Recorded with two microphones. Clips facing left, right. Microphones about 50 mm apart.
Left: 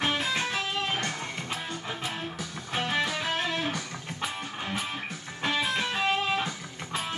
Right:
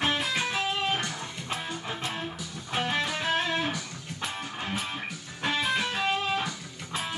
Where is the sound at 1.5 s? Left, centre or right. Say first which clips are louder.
Right 1 dB; centre.